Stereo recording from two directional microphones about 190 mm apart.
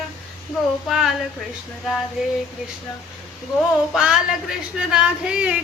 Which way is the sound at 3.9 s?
5° right (ahead or behind).